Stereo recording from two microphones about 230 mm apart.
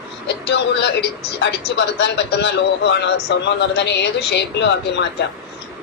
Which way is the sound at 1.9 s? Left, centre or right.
Left.